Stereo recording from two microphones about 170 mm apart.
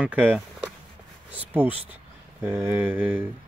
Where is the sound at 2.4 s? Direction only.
15° right (ahead or behind).